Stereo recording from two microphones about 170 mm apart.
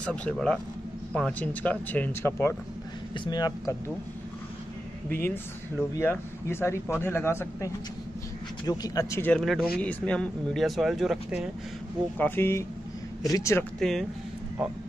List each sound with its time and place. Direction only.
0.0 s speech: 5° left (ahead or behind); by 3.7 s 25° left (ahead or behind)
5.1 s speech: 15° left (ahead or behind)
9.4 s speech: centre (ahead or behind)
12.2 s speech: 15° left (ahead or behind)
13.7 s speech: 5° left (ahead or behind)